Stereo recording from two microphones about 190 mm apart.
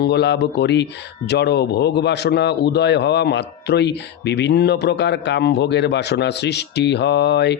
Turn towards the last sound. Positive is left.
turn(degrees=65)  # may be behind; listen again after turning